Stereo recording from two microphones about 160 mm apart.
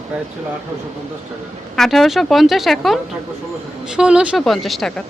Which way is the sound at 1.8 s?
Centre (ahead or behind).